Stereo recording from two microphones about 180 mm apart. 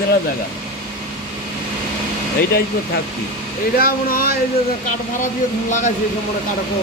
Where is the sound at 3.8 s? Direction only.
55° left (ahead or behind).